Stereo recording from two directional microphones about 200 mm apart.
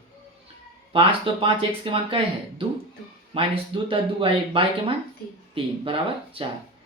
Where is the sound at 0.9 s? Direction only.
25° right (ahead or behind).